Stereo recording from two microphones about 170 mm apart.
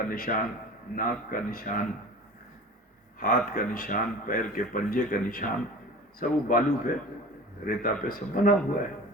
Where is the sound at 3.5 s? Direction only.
55° left (ahead or behind).